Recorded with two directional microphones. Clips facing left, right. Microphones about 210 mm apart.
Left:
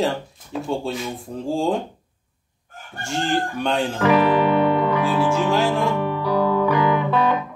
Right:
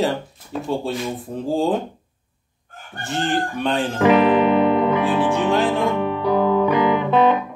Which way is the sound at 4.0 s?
20° right (ahead or behind).